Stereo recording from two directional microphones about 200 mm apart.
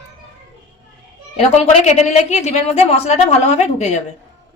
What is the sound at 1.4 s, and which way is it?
A woman's voice, 35° left (ahead or behind).